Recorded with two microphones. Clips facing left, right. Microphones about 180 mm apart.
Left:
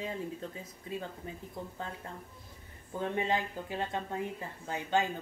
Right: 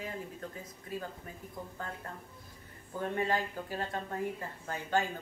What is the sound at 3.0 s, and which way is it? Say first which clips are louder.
Speech: even; 20° left (ahead or behind).